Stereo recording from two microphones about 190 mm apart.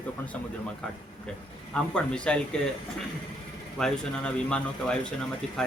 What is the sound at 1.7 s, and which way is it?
Speech, 5° left (ahead or behind).